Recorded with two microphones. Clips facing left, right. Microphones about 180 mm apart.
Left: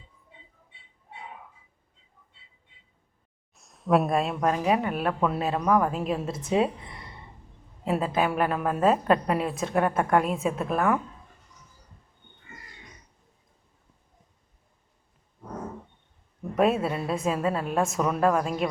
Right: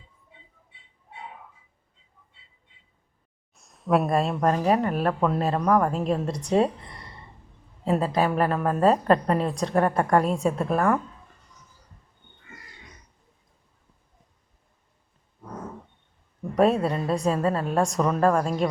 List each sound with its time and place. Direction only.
3.5 s speech: centre (ahead or behind)
16.6 s speech: 5° left (ahead or behind)